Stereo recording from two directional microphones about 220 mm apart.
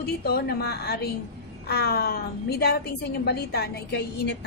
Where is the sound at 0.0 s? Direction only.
45° left (ahead or behind).